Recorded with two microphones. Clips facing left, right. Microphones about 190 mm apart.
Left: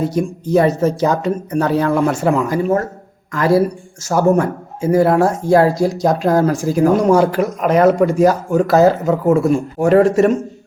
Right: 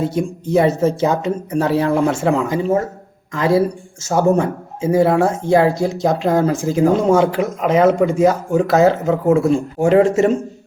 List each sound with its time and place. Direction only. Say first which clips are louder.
0.4 s speech: left 1 dB; 25° right (ahead or behind)